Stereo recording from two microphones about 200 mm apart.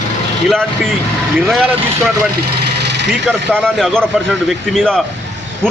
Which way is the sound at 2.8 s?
60° right (ahead or behind).